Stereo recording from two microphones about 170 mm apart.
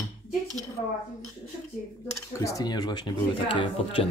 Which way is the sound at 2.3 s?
20° left (ahead or behind).